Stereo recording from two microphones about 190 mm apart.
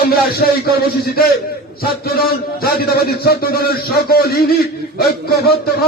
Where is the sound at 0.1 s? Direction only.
55° left (ahead or behind).